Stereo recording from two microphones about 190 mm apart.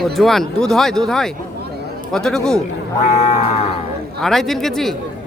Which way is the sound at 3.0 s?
35° left (ahead or behind).